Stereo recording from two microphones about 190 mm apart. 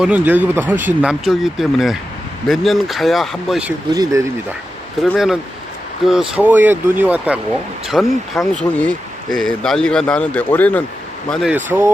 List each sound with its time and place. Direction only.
0.0 s speech: 10° right (ahead or behind)
3.9 s speech: 20° right (ahead or behind)
4.9 s speech: centre (ahead or behind)
11.5 s speech: 10° right (ahead or behind)